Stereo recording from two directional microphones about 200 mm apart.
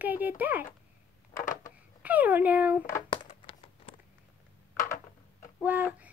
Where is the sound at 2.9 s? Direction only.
25° left (ahead or behind).